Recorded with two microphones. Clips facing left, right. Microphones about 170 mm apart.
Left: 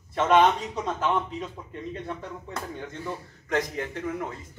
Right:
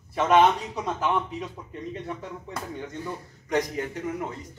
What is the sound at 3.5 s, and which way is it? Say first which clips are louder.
Speech: right 1 dB; 15° right (ahead or behind).